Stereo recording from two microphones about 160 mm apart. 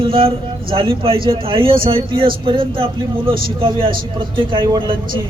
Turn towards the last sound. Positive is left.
turn(degrees=-30)  # may be behind; listen again after turning